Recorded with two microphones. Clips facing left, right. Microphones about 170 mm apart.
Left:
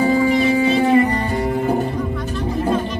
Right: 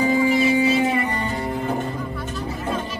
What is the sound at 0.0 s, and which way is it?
Music, 35° left (ahead or behind).